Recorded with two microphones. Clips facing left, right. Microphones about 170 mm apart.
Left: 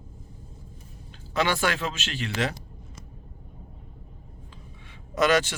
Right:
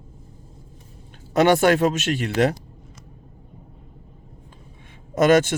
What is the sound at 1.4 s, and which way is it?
Speech, 50° right (ahead or behind).